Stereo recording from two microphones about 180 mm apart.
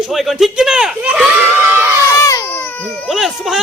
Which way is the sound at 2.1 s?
15° left (ahead or behind).